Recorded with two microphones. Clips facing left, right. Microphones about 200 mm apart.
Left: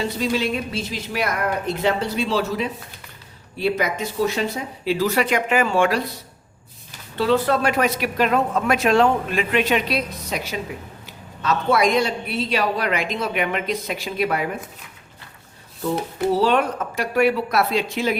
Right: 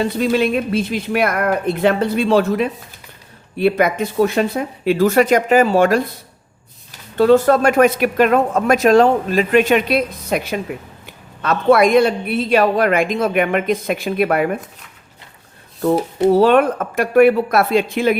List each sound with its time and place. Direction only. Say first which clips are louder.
0.0 s a woman's voice: right 6 dB; 55° right (ahead or behind); by 6.0 s 40° right (ahead or behind)
7.2 s a woman's voice: right 7 dB; 45° right (ahead or behind)
16.3 s speech: right 7 dB; 55° right (ahead or behind)